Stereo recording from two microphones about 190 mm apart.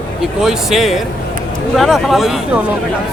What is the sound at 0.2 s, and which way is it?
Speech, centre (ahead or behind).